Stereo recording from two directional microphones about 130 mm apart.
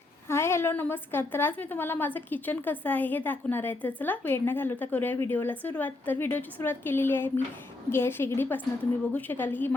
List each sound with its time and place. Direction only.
0.3 s a woman's voice: 20° left (ahead or behind)